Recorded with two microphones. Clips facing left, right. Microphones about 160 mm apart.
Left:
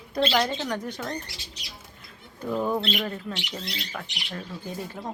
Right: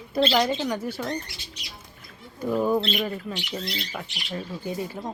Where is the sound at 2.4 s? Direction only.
10° right (ahead or behind).